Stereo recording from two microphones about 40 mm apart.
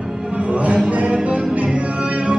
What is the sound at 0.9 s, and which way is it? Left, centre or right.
Music, right.